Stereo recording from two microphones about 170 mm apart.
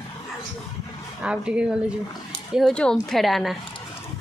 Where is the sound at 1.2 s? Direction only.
5° right (ahead or behind).